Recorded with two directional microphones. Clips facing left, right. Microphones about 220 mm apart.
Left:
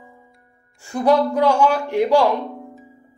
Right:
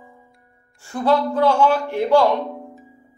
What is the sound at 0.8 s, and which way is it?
Speech, 15° left (ahead or behind).